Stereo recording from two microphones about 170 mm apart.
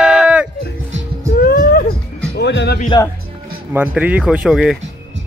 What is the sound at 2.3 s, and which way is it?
Music, 90° left.